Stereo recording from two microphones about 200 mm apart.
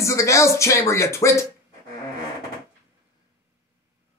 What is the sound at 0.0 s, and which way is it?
Speech, 15° left (ahead or behind).